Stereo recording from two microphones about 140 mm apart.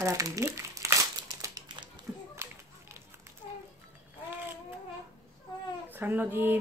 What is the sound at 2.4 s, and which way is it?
Children playing, 20° right (ahead or behind).